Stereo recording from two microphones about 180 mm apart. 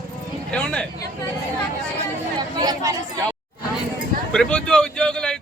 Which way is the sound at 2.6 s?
20° right (ahead or behind).